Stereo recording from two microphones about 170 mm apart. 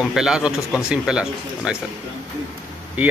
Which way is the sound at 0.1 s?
5° right (ahead or behind).